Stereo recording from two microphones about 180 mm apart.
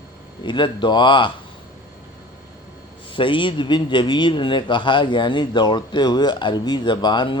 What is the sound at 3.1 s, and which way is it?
Speech, 30° left (ahead or behind).